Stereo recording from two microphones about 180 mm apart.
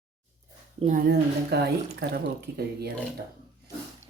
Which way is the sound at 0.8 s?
45° right (ahead or behind).